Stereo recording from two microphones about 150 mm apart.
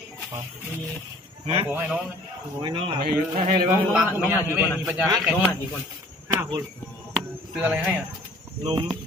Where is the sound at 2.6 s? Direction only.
30° right (ahead or behind).